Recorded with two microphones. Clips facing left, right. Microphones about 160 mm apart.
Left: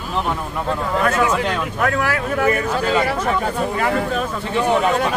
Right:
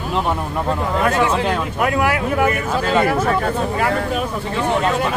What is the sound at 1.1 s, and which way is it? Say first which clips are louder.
Speech: right 1 dB; 30° right (ahead or behind).